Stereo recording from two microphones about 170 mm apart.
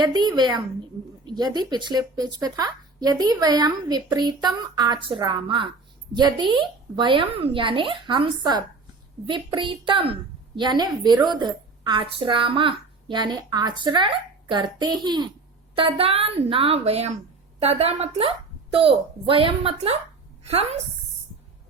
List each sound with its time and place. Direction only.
0.0 s a woman's voice: 25° right (ahead or behind)